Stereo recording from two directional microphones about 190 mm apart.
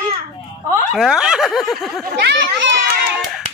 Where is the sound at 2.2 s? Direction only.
65° right (ahead or behind).